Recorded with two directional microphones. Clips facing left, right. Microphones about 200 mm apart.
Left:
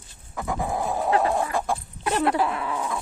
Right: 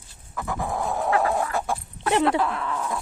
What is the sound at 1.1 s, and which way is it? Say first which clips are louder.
Chicken: left 1 dB; 20° left (ahead or behind).